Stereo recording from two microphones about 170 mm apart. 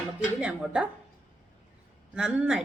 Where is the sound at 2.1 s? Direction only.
5° right (ahead or behind).